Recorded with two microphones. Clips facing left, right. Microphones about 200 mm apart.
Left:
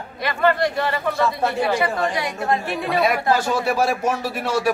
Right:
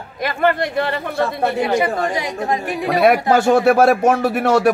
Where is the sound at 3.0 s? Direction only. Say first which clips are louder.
Right 6 dB; 60° right (ahead or behind).